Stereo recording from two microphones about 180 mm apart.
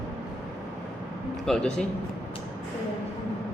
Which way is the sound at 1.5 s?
5° left (ahead or behind).